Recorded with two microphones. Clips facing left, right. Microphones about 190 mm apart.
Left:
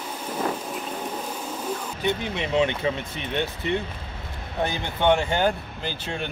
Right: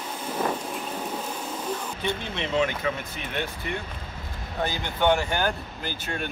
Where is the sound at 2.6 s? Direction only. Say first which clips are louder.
Left 3 dB; 25° left (ahead or behind).